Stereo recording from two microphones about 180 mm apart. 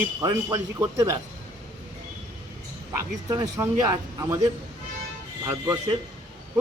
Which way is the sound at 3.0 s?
20° right (ahead or behind).